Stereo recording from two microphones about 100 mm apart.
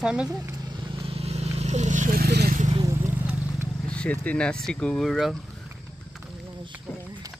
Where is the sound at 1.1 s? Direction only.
90° right.